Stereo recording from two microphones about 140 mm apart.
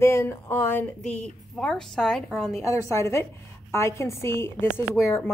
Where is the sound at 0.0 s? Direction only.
20° left (ahead or behind); by 2.5 s centre (ahead or behind).